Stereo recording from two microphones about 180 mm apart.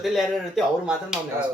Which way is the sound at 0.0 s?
Centre (ahead or behind).